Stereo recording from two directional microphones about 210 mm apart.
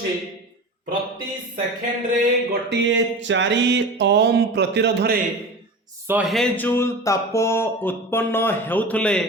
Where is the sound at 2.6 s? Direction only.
60° right (ahead or behind).